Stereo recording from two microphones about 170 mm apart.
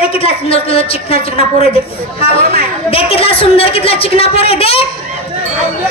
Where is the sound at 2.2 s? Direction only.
35° left (ahead or behind).